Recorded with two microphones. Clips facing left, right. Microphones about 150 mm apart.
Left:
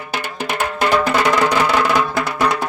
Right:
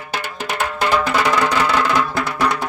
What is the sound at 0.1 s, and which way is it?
Music, 15° left (ahead or behind).